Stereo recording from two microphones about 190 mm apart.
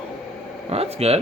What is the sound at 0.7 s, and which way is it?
Speech, 30° right (ahead or behind).